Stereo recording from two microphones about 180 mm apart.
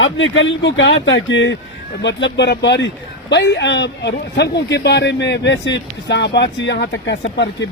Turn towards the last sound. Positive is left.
turn(degrees=90)